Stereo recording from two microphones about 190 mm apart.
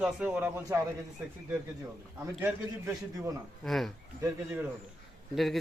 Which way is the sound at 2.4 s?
10° right (ahead or behind).